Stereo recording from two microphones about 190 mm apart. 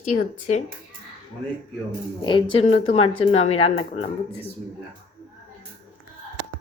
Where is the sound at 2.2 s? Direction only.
25° left (ahead or behind).